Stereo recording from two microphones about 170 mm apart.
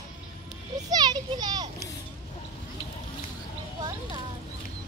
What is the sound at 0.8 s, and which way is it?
Children playing, 25° right (ahead or behind).